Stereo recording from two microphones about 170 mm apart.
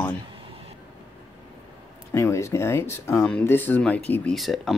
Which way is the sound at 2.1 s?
15° left (ahead or behind).